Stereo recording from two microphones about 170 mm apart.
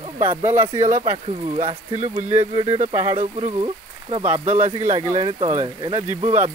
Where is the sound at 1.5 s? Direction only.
35° right (ahead or behind).